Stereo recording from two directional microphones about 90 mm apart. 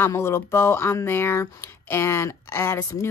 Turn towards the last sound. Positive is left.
turn(degrees=40)  # may be behind; listen again after turning